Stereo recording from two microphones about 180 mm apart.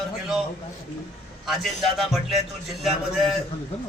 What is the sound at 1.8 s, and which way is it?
Speech, centre (ahead or behind).